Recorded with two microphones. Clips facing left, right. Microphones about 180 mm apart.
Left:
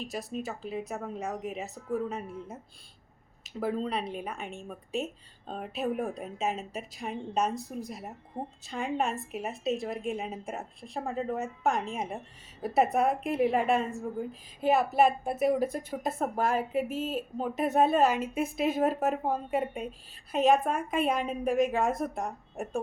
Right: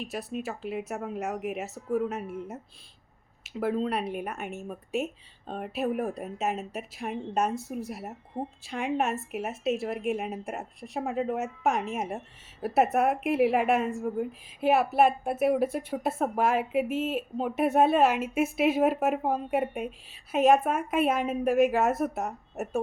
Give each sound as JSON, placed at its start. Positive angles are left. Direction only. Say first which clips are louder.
{"t": 0.4, "sound": "a woman's voice", "louder": "right 2 dB", "side_deg": -5}
{"t": 11.6, "sound": "a woman's voice", "louder": "right 1 dB", "side_deg": -5}